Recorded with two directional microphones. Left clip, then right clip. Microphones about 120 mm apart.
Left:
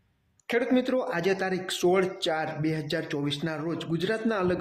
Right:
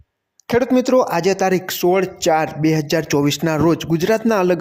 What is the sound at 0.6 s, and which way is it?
Speech, 55° right (ahead or behind).